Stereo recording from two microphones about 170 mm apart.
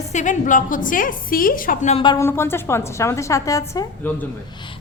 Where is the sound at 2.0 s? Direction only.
25° left (ahead or behind).